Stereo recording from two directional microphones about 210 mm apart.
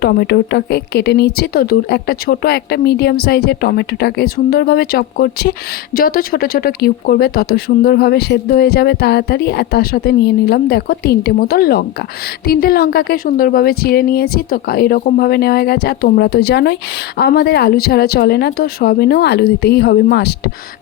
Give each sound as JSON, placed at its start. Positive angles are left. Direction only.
{"t": 0.0, "sound": "speech", "side_deg": 50}